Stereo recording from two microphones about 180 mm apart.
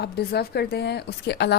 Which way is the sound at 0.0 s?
65° left (ahead or behind).